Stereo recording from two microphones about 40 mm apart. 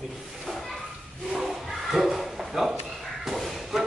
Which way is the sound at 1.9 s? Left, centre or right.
Centre.